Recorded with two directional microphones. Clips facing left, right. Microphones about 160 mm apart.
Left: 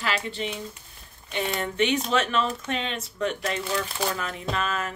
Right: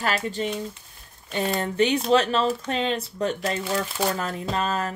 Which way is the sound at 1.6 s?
35° right (ahead or behind).